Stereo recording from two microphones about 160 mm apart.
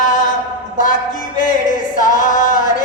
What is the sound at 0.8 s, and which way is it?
Singing, 55° left (ahead or behind).